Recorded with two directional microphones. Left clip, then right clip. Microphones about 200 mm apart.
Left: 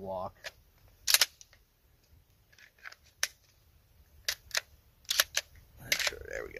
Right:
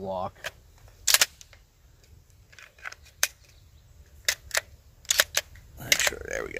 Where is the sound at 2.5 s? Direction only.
5° right (ahead or behind).